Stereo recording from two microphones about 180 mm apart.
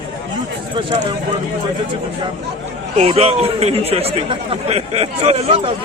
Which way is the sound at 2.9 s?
35° right (ahead or behind).